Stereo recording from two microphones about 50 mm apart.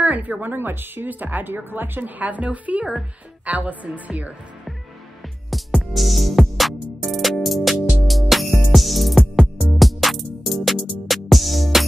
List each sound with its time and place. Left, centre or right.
0.0 s a woman's voice: right
5.5 s music: centre